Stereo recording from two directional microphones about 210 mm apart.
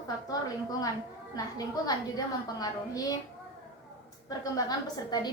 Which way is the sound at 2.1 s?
15° left (ahead or behind).